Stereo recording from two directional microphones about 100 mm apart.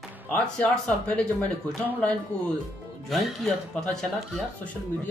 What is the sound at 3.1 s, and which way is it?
Speech, centre (ahead or behind).